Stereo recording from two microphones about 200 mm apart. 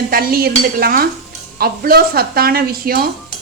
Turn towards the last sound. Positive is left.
turn(degrees=-50)  # may be behind; listen again after turning